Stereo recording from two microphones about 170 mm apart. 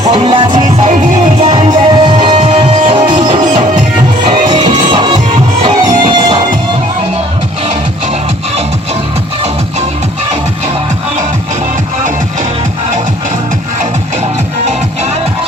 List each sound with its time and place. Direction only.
0.1 s music: 30° right (ahead or behind)
0.5 s music: 45° right (ahead or behind)
1.5 s music: 25° right (ahead or behind)